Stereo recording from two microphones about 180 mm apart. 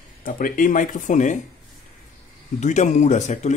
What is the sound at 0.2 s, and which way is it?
Speech, 50° left (ahead or behind).